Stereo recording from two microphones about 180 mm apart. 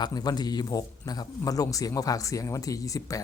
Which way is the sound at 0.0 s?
20° left (ahead or behind).